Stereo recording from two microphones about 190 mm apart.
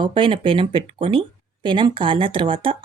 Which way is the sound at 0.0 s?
25° right (ahead or behind).